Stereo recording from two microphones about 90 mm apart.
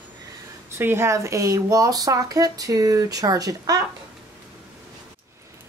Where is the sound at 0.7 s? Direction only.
30° right (ahead or behind); by 3.8 s 45° right (ahead or behind).